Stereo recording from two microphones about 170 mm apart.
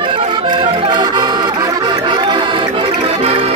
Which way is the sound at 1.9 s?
30° right (ahead or behind).